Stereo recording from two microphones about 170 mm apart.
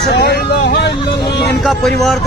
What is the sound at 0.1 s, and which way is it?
Vehicle, 75° left (ahead or behind).